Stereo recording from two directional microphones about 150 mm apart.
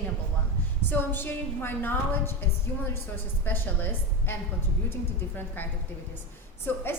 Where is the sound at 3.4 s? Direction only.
15° left (ahead or behind).